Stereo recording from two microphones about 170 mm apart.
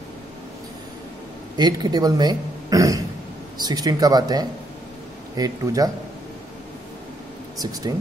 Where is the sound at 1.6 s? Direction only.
25° right (ahead or behind).